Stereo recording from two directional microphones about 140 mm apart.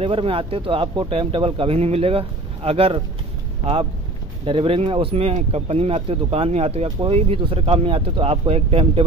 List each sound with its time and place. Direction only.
0.0 s speech: 40° right (ahead or behind)
4.5 s speech: 40° right (ahead or behind)